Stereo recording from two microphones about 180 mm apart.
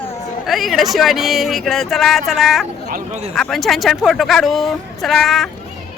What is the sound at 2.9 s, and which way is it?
Speech, 40° right (ahead or behind).